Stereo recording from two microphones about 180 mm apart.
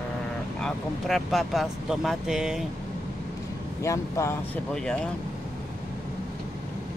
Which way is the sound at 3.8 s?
15° left (ahead or behind).